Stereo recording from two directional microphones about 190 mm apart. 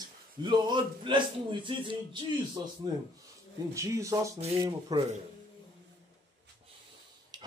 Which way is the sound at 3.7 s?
15° right (ahead or behind).